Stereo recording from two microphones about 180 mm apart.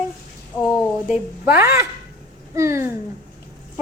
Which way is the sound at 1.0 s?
5° right (ahead or behind).